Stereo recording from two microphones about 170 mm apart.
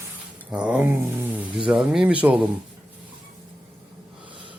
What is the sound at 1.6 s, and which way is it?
Speech, 5° right (ahead or behind).